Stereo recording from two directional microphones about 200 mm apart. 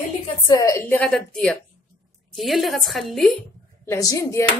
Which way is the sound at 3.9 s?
15° left (ahead or behind).